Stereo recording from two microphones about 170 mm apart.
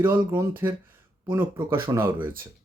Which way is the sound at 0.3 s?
15° right (ahead or behind).